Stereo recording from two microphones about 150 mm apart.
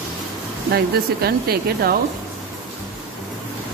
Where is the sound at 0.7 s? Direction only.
90° right.